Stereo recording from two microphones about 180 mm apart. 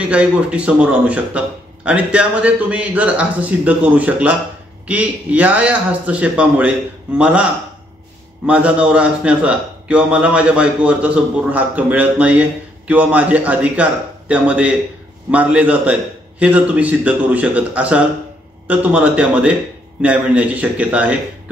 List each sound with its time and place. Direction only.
0.1 s a man's voice: 5° right (ahead or behind)